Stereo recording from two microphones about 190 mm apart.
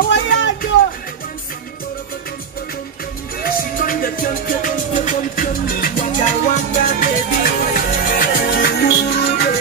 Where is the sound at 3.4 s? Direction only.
50° left (ahead or behind).